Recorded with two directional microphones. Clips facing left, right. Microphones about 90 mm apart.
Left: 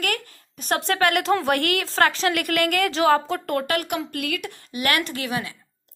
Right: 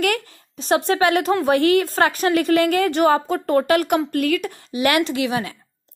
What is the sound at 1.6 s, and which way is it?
Speech, 65° left (ahead or behind).